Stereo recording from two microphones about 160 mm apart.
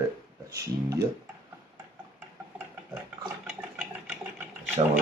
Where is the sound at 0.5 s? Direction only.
20° right (ahead or behind).